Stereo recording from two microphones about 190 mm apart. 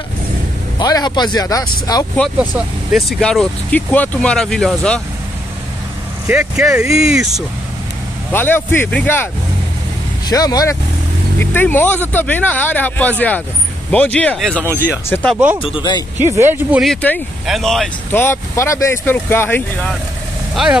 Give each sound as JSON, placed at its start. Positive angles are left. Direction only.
{"t": 0.7, "sound": "speech", "side_deg": 20}
{"t": 2.3, "sound": "speech", "side_deg": -5}
{"t": 6.2, "sound": "speech", "side_deg": -5}
{"t": 8.3, "sound": "speech", "side_deg": 10}
{"t": 15.6, "sound": "speech", "side_deg": 25}
{"t": 16.3, "sound": "speech", "side_deg": -10}
{"t": 16.8, "sound": "speech", "side_deg": 5}